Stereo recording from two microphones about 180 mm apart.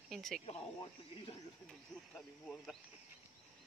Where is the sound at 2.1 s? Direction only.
Centre (ahead or behind).